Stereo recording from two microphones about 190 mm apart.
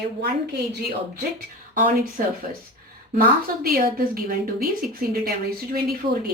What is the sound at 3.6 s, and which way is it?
A woman's voice, 50° right (ahead or behind).